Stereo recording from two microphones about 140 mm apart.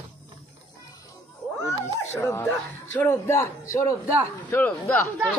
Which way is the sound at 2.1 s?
20° left (ahead or behind).